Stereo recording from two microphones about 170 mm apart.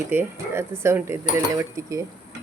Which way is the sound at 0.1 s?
15° right (ahead or behind).